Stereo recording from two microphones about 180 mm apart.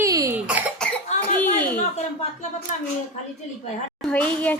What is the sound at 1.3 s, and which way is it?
Speech, 10° left (ahead or behind).